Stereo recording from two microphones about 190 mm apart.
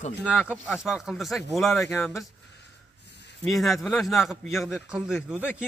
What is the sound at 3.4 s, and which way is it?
A man's voice, centre (ahead or behind).